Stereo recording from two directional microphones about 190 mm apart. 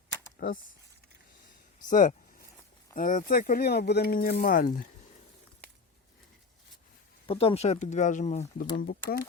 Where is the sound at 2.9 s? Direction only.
45° left (ahead or behind).